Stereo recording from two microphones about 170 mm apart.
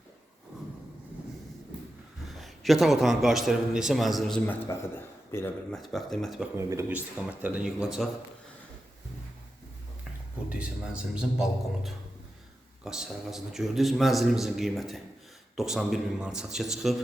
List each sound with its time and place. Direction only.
2.3 s a man's voice: centre (ahead or behind)
5.7 s a man's voice: centre (ahead or behind)
6.6 s a man's voice: 15° right (ahead or behind)
10.5 s a man's voice: 5° right (ahead or behind)